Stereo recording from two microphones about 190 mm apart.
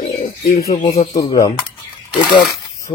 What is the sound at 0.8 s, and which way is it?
Speech, 35° left (ahead or behind).